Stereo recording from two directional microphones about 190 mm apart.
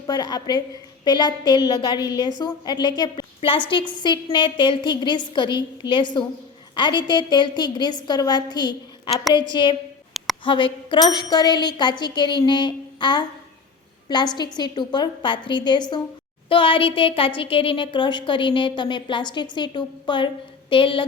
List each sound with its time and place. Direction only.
0.1 s a woman's voice: 20° left (ahead or behind)